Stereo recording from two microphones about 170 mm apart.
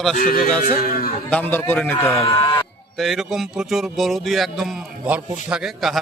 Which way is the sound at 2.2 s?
30° left (ahead or behind).